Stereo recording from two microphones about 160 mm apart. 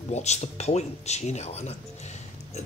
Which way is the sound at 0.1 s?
45° left (ahead or behind).